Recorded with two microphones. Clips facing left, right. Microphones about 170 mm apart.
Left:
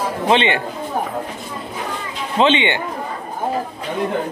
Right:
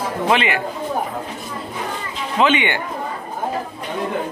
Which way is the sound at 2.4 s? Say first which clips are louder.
Left 2 dB; 25° left (ahead or behind).